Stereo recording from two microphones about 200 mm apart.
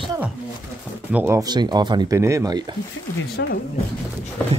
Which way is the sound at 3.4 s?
60° left (ahead or behind).